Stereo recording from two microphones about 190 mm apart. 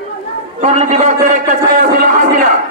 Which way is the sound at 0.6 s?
40° right (ahead or behind).